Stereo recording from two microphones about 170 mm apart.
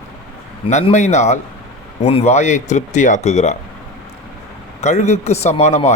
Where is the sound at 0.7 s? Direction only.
45° left (ahead or behind).